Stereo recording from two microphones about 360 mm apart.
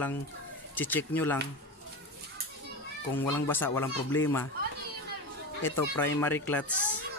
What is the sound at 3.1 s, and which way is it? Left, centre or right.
Speech, centre.